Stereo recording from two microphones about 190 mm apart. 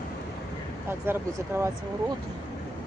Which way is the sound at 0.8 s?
10° right (ahead or behind).